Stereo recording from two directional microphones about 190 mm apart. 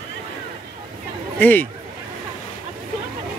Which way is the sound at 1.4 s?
10° left (ahead or behind).